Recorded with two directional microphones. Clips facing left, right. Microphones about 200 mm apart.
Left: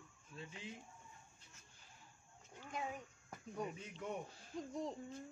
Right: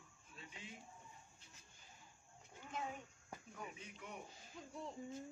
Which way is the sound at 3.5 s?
40° left (ahead or behind).